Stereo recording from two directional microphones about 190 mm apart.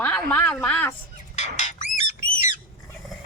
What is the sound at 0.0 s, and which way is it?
Speech, 10° left (ahead or behind).